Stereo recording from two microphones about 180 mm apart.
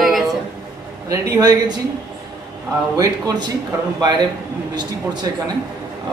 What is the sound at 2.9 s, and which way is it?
Speech, 20° right (ahead or behind).